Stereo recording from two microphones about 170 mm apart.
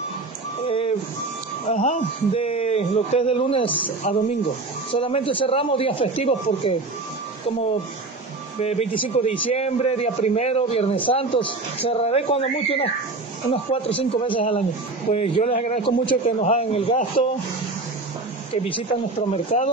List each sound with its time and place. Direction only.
0.7 s a sound: 35° left (ahead or behind)
1.7 s a man's voice: 45° left (ahead or behind)
4.1 s a man's voice: 45° left (ahead or behind)
4.9 s a man's voice: 30° left (ahead or behind)
8.5 s a man's voice: 35° left (ahead or behind)
18.6 s a man's voice: 30° left (ahead or behind)